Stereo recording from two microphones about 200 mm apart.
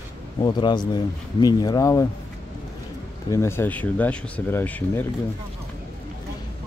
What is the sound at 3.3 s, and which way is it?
Speech, 15° left (ahead or behind).